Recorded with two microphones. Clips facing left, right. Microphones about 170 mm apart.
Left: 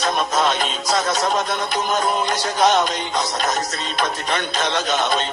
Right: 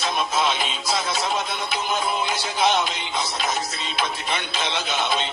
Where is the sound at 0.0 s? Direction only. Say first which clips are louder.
Left 4 dB; 50° left (ahead or behind).